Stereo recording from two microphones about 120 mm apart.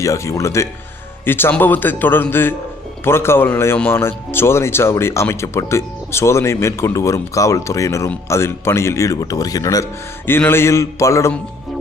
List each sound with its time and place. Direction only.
0.0 s a man's voice: 25° left (ahead or behind)
10.2 s speech: 20° left (ahead or behind)